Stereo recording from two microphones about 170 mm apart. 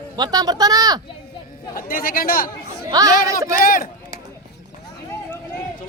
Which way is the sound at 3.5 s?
55° left (ahead or behind).